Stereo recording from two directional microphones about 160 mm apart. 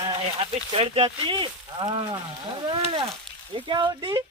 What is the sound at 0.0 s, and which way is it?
Speech, 35° right (ahead or behind).